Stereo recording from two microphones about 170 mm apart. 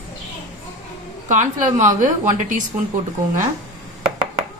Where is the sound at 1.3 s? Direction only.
45° right (ahead or behind).